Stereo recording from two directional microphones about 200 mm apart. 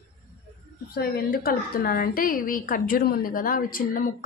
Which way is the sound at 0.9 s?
50° left (ahead or behind).